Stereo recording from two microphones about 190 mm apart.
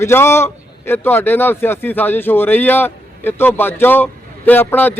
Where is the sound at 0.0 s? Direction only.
15° left (ahead or behind).